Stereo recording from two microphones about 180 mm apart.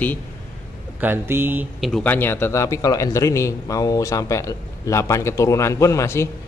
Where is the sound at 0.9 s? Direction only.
10° right (ahead or behind).